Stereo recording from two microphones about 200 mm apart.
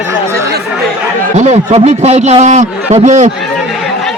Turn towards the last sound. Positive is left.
turn(degrees=-40)  # may be behind; listen again after turning